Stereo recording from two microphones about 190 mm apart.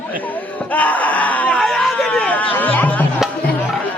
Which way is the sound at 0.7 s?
10° left (ahead or behind).